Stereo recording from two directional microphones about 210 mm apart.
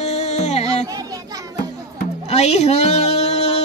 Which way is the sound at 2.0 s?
30° left (ahead or behind).